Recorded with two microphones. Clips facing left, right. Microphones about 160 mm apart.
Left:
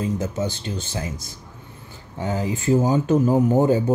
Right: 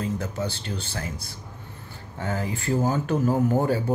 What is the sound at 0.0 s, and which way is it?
Speech, 20° left (ahead or behind).